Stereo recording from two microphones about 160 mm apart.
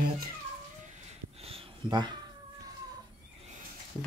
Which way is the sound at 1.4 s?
35° right (ahead or behind).